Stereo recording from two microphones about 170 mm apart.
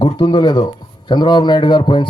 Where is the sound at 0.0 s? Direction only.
30° left (ahead or behind).